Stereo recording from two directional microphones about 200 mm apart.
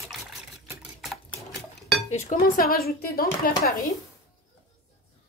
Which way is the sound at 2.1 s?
35° left (ahead or behind).